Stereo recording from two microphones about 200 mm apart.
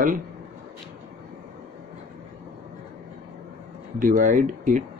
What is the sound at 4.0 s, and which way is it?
Speech, 40° right (ahead or behind).